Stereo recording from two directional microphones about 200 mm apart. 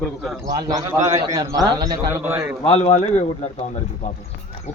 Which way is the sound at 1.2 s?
20° right (ahead or behind).